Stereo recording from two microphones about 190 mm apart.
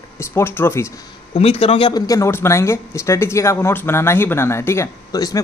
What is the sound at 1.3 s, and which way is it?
Speech, 30° left (ahead or behind).